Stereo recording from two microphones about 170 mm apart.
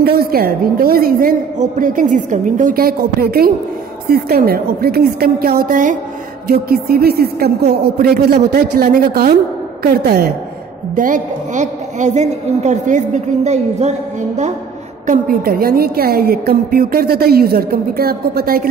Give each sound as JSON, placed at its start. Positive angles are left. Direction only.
{"t": 0.0, "sound": "a woman's voice", "side_deg": -65}
{"t": 6.4, "sound": "a woman's voice", "side_deg": -65}
{"t": 11.0, "sound": "a woman's voice", "side_deg": -50}
{"t": 15.0, "sound": "a woman's voice", "side_deg": -60}